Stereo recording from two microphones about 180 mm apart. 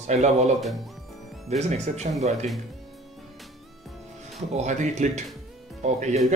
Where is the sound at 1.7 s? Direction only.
40° right (ahead or behind).